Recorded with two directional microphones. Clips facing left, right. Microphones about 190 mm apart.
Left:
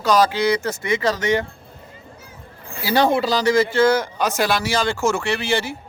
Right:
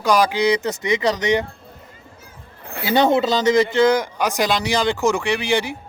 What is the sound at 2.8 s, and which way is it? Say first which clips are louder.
Speech: right 1 dB; 20° right (ahead or behind).